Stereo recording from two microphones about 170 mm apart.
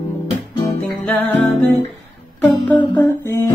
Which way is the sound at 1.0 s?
10° left (ahead or behind).